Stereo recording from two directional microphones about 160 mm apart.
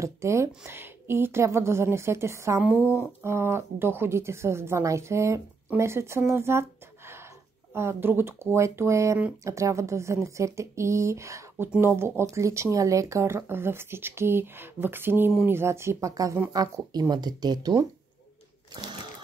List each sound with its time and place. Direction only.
0.0 s speech: 20° right (ahead or behind)
7.7 s speech: 15° right (ahead or behind)